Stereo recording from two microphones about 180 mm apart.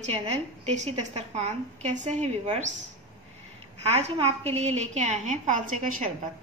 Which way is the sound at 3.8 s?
35° right (ahead or behind).